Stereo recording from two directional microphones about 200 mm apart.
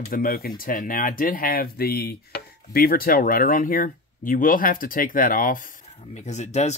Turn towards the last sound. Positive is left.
turn(degrees=35)  # may be behind; listen again after turning